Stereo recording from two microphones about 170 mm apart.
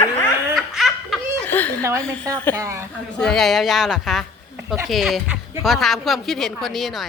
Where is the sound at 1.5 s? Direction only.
10° left (ahead or behind).